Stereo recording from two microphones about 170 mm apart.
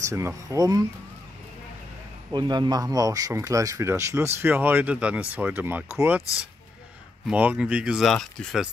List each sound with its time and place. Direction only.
0.1 s speech: 15° right (ahead or behind)
2.3 s speech: 25° right (ahead or behind); by 6.2 s 10° right (ahead or behind)
7.2 s speech: 5° right (ahead or behind)